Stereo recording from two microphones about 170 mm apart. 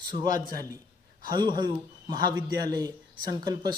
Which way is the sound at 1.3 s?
25° right (ahead or behind).